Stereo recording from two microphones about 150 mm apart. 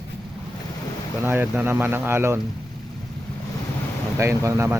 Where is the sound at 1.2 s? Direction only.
15° right (ahead or behind).